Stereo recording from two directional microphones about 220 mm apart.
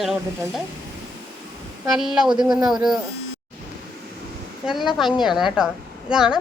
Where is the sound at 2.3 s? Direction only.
20° right (ahead or behind).